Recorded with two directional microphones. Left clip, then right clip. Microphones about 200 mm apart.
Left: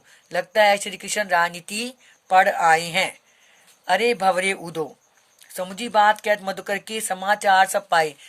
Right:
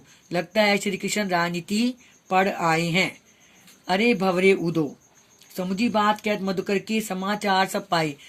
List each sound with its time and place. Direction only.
0.3 s speech: 35° left (ahead or behind)